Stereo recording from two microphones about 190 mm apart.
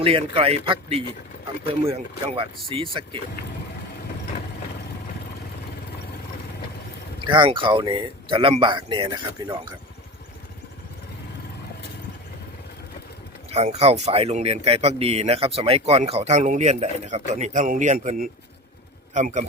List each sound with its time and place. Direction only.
0.0 s speech: 30° right (ahead or behind)
7.3 s speech: 25° right (ahead or behind)
13.5 s speech: 35° right (ahead or behind)